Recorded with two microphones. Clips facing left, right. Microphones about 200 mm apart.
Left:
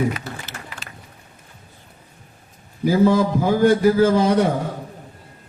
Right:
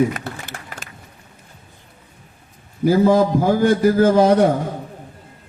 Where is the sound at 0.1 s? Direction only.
50° right (ahead or behind).